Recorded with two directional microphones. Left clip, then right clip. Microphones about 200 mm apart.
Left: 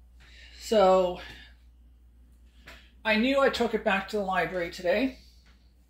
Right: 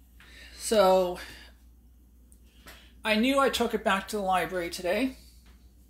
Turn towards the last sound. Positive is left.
turn(degrees=-15)  # may be behind; listen again after turning